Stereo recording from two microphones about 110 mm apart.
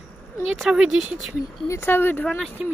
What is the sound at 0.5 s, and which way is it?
Speech, 5° right (ahead or behind).